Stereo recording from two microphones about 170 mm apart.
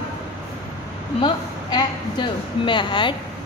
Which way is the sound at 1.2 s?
30° left (ahead or behind).